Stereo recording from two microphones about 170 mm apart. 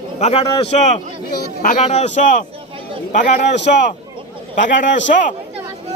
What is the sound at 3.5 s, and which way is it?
Speech, 90° left.